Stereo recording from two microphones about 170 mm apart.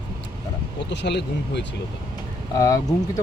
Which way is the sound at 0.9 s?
90° left.